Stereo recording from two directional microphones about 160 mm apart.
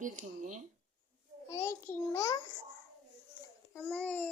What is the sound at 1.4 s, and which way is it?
Speech, 15° left (ahead or behind).